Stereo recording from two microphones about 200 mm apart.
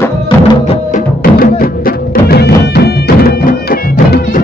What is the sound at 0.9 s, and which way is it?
Music, 45° left (ahead or behind).